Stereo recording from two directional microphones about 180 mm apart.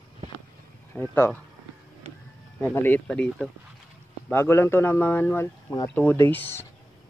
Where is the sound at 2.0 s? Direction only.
35° right (ahead or behind).